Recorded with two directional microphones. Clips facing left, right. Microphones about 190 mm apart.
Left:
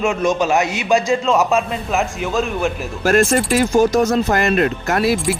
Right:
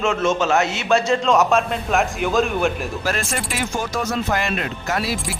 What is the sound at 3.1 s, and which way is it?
Speech, 50° left (ahead or behind).